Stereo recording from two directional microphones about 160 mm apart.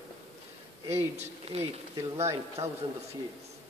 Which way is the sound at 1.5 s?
40° right (ahead or behind).